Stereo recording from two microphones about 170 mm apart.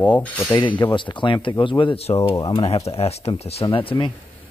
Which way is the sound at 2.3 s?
20° left (ahead or behind).